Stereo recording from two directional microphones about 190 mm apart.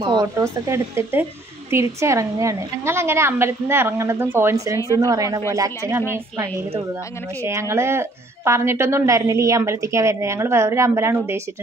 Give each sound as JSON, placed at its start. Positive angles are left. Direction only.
{"t": 0.0, "sound": "a woman's voice", "side_deg": -20}